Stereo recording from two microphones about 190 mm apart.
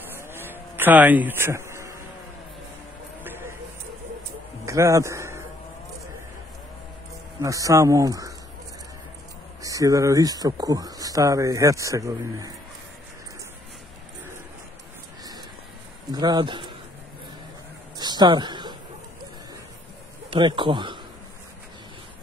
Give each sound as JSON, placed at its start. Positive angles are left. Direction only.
{"t": 0.3, "sound": "insect", "side_deg": -10}
{"t": 3.3, "sound": "a sound", "side_deg": -10}
{"t": 4.6, "sound": "a man's voice", "side_deg": -15}
{"t": 7.4, "sound": "speech", "side_deg": -15}
{"t": 9.6, "sound": "speech", "side_deg": -15}
{"t": 16.1, "sound": "speech", "side_deg": -20}
{"t": 17.9, "sound": "a sound", "side_deg": -20}
{"t": 20.2, "sound": "speech", "side_deg": -25}